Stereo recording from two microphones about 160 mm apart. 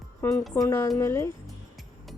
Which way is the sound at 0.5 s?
15° left (ahead or behind).